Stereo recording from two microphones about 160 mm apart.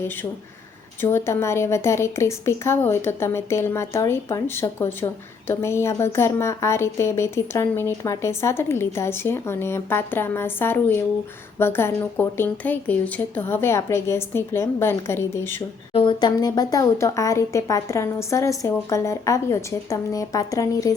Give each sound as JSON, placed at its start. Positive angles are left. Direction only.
{"t": 0.0, "sound": "a woman's voice", "side_deg": 15}
{"t": 15.9, "sound": "speech", "side_deg": 30}